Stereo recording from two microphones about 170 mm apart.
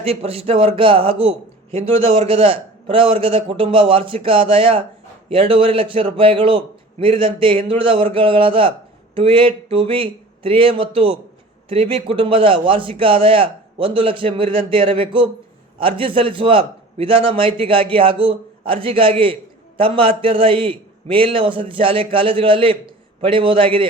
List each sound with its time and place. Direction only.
0.0 s a man's voice: 35° right (ahead or behind)